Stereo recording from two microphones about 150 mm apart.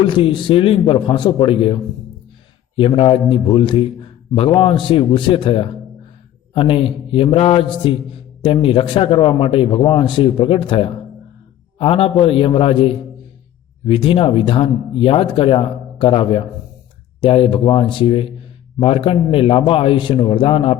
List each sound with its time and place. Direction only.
0.0 s a man's voice: 35° left (ahead or behind)